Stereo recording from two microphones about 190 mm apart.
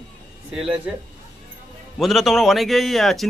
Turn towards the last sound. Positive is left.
turn(degrees=0)  # may be behind; listen again after turning